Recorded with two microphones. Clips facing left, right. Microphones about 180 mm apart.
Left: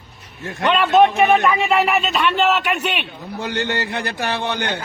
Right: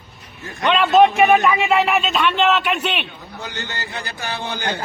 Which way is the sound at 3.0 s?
60° left (ahead or behind).